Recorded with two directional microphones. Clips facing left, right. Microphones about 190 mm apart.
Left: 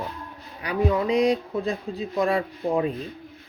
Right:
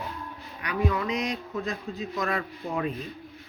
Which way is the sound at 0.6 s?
30° left (ahead or behind).